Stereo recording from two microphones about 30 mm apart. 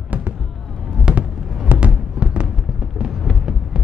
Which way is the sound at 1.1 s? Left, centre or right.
Right.